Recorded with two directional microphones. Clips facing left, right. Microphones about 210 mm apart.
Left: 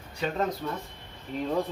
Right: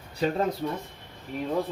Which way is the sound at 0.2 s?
35° right (ahead or behind).